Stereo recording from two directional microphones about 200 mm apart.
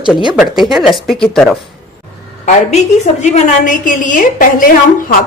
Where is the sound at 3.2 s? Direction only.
40° left (ahead or behind).